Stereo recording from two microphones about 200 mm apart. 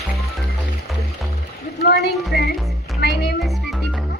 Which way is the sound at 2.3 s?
55° left (ahead or behind).